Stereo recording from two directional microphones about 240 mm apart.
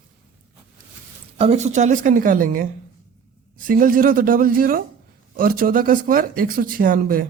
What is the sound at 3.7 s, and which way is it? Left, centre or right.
Speech, right.